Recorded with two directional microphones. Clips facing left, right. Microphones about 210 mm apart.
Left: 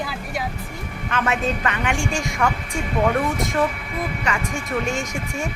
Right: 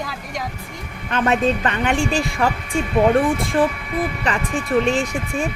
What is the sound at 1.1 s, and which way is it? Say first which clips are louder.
A woman's voice: right 5 dB; 35° right (ahead or behind).